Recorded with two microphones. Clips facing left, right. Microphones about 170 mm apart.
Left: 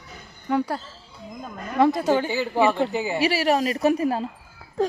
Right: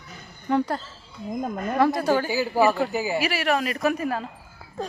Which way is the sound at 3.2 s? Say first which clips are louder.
Left 3 dB; 35° left (ahead or behind).